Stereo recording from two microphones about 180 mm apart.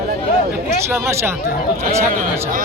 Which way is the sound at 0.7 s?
15° right (ahead or behind).